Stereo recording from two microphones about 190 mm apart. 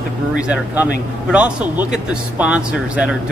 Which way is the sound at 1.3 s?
5° right (ahead or behind).